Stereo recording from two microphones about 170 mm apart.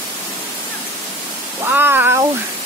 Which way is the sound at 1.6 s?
10° right (ahead or behind).